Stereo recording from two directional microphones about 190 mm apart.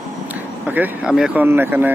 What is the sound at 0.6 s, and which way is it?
Speech, 10° right (ahead or behind).